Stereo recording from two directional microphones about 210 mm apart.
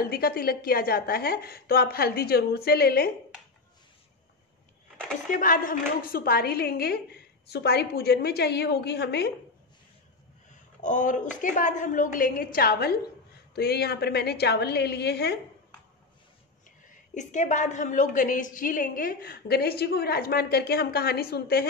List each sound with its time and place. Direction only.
0.0 s a woman's voice: 45° left (ahead or behind)
5.3 s a woman's voice: 40° left (ahead or behind)
10.8 s a woman's voice: 35° left (ahead or behind); by 15.3 s 50° left (ahead or behind)
16.9 s a woman's voice: 35° left (ahead or behind)